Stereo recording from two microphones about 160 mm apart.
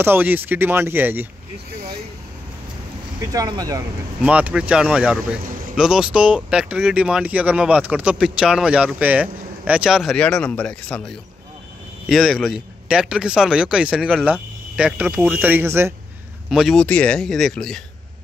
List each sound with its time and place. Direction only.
0.0 s speech: 10° right (ahead or behind)
1.7 s vehicle: 80° right
3.3 s speech: 25° right (ahead or behind)
4.2 s speech: 10° right (ahead or behind)
16.4 s speech: centre (ahead or behind)